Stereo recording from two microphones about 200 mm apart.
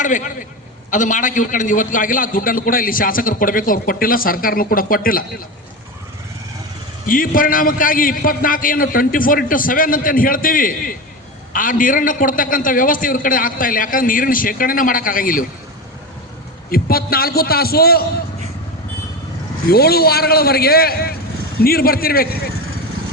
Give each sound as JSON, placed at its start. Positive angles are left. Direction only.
{"t": 0.0, "sound": "a man's voice", "side_deg": 40}
{"t": 7.1, "sound": "a man's voice", "side_deg": 45}
{"t": 16.6, "sound": "a man's voice", "side_deg": 50}
{"t": 19.7, "sound": "a man's voice", "side_deg": 50}